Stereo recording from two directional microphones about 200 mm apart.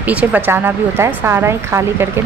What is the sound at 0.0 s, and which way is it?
Speech, 5° right (ahead or behind).